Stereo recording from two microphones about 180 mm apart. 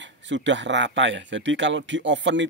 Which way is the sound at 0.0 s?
90° right.